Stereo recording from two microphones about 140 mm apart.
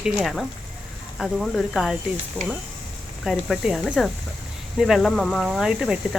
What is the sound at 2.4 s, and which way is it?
Speech, 10° right (ahead or behind).